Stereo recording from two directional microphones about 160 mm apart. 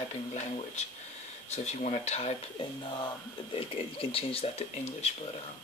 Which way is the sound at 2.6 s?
30° left (ahead or behind).